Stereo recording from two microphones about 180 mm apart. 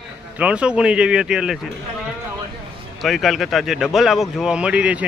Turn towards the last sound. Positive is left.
turn(degrees=-5)  # may be behind; listen again after turning